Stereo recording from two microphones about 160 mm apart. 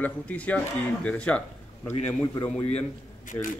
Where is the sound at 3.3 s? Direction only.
55° left (ahead or behind).